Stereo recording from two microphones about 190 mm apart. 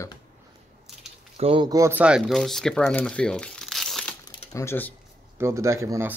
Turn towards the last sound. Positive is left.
turn(degrees=-15)  # may be behind; listen again after turning